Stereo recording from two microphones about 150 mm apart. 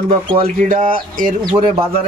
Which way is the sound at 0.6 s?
60° right (ahead or behind).